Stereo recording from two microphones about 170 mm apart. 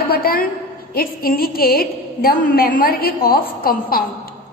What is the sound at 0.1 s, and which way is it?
A woman's voice, 60° left (ahead or behind).